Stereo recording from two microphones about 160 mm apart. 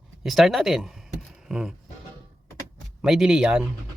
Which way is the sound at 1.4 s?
5° right (ahead or behind).